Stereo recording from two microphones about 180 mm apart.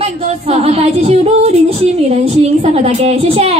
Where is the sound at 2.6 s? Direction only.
35° right (ahead or behind).